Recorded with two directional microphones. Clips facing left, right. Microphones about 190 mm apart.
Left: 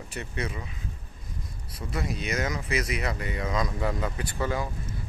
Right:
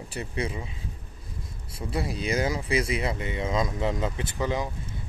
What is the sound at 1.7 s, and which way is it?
Speech, 30° right (ahead or behind).